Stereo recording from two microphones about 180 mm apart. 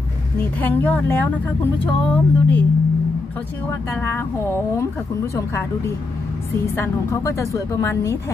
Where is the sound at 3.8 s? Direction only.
10° left (ahead or behind).